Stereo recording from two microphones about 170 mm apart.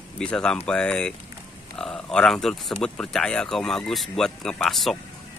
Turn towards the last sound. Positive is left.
turn(degrees=0)  # may be behind; listen again after turning